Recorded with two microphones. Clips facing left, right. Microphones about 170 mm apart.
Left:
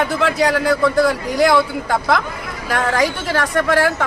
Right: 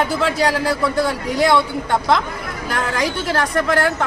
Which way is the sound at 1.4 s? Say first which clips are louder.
Left 2 dB; centre (ahead or behind).